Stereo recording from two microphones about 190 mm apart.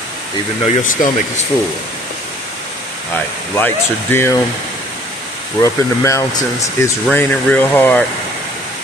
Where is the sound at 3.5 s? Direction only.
10° left (ahead or behind).